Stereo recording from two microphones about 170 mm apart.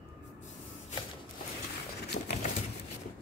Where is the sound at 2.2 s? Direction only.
85° left.